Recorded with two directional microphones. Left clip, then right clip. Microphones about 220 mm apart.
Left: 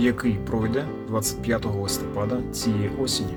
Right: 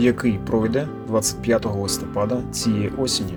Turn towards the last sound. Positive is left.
turn(degrees=-10)  # may be behind; listen again after turning